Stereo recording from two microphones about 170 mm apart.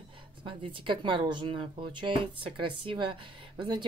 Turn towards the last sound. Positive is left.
turn(degrees=-25)  # may be behind; listen again after turning